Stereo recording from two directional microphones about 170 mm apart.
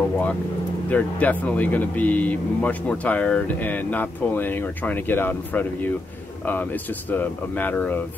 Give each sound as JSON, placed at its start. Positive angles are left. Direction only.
{"t": 0.8, "sound": "speech", "side_deg": 10}